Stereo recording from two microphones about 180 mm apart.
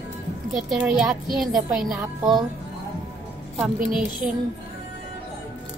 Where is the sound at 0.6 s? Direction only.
Centre (ahead or behind).